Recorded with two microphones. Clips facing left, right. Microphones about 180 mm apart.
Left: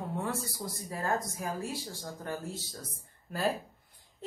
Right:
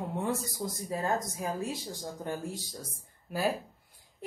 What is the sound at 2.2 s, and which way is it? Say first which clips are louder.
Speech: right 1 dB; 15° right (ahead or behind).